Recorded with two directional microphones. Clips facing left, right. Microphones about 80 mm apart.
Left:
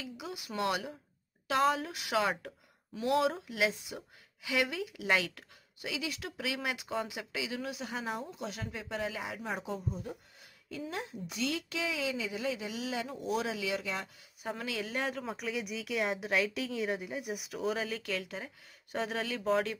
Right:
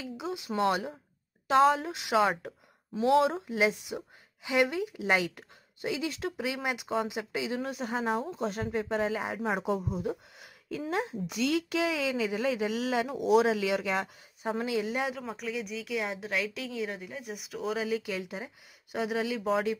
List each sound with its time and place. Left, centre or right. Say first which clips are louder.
0.0 s speech: right 6 dB; right
5.9 s speech: right 6 dB; right
9.6 s speech: right 7 dB; right
11.7 s speech: right 6 dB; right
12.6 s speech: right 7 dB; right
13.1 s speech: right 13 dB; right
13.5 s speech: right 7 dB; right
14.5 s speech: right 6 dB; right
15.0 s a woman's voice: right 1 dB; centre
17.8 s speech: right 5 dB; centre